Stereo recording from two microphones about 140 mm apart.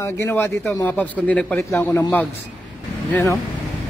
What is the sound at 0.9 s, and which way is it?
Speech, 10° left (ahead or behind).